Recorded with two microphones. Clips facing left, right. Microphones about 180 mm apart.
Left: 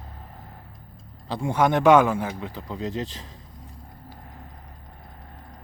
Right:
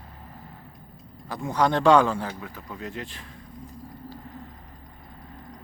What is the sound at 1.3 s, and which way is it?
Speech, 30° left (ahead or behind).